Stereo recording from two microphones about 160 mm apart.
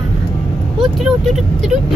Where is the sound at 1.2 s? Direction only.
Centre (ahead or behind).